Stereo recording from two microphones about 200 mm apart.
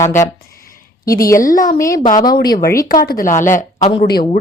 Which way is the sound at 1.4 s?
40° left (ahead or behind).